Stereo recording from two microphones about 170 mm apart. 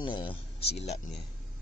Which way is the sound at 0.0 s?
30° left (ahead or behind).